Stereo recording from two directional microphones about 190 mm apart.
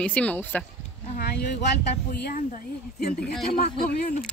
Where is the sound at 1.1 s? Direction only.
55° left (ahead or behind).